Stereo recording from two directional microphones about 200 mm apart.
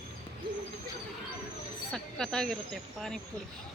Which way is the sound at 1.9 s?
5° left (ahead or behind).